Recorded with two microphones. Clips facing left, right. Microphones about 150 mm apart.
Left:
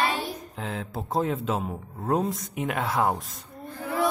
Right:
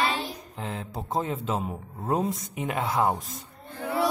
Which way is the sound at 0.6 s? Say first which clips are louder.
Even; centre (ahead or behind).